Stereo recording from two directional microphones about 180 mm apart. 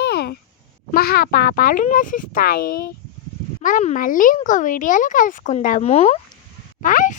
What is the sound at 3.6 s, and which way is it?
A child's voice, 45° left (ahead or behind).